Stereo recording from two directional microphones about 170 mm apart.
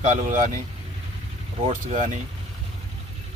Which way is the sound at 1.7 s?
45° right (ahead or behind).